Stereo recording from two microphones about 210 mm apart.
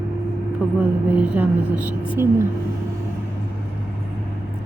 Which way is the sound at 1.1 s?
5° right (ahead or behind).